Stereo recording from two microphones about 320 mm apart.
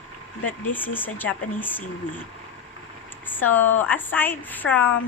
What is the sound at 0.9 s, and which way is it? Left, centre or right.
Speech, centre.